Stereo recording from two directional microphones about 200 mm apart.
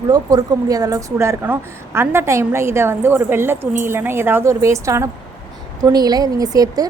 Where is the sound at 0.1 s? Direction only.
20° right (ahead or behind).